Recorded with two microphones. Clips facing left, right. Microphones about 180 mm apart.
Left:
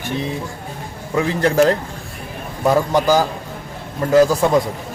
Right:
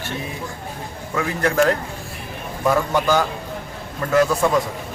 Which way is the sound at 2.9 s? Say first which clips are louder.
Left 3 dB; 35° left (ahead or behind).